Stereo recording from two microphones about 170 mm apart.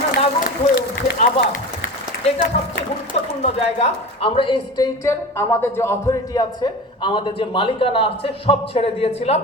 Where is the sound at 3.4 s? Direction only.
35° left (ahead or behind).